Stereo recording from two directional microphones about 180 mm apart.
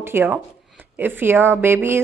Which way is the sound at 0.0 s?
10° right (ahead or behind).